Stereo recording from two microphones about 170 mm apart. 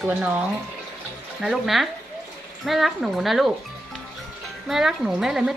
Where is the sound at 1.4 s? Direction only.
Centre (ahead or behind).